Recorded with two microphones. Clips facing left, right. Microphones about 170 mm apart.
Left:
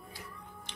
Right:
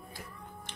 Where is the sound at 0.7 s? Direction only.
50° right (ahead or behind).